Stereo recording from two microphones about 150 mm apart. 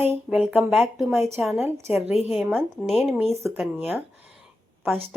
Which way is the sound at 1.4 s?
Centre (ahead or behind).